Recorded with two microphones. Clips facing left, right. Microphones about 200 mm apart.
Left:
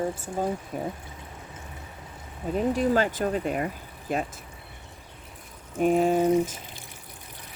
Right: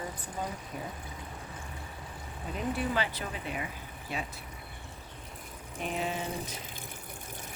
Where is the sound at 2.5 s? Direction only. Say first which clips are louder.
Left 9 dB; 40° left (ahead or behind).